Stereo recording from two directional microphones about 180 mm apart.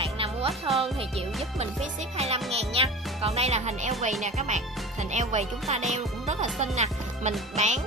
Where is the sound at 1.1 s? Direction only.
35° right (ahead or behind).